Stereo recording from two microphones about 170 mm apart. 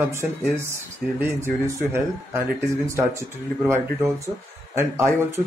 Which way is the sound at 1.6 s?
15° right (ahead or behind).